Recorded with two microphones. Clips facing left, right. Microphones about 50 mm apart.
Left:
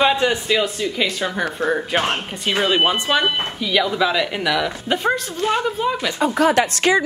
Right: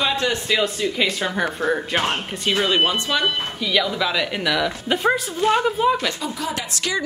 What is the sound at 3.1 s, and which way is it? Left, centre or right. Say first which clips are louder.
A woman's voice: left 3 dB; centre.